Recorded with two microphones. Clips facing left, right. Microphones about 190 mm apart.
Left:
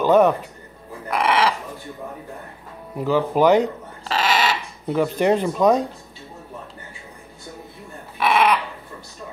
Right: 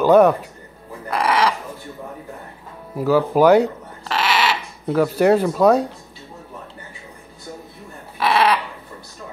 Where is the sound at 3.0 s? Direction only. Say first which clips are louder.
Right 3 dB; 5° right (ahead or behind).